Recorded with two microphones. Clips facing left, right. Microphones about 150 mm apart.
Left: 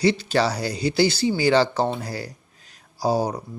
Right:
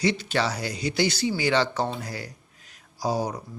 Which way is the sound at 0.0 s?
35° left (ahead or behind).